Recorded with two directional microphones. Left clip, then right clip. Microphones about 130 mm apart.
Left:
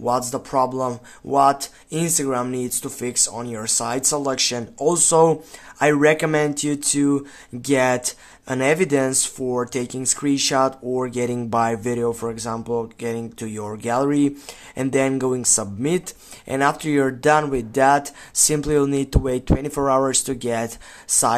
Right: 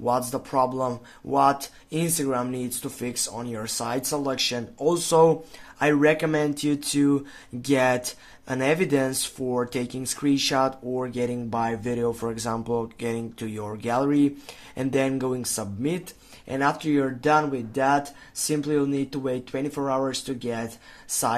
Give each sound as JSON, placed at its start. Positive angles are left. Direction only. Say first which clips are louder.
{"t": 0.0, "sound": "speech", "louder": "left 3 dB", "side_deg": 20}